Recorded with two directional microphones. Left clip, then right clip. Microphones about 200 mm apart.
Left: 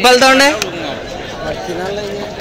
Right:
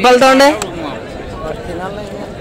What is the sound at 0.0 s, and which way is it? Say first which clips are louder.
Speech: right 1 dB; 15° right (ahead or behind).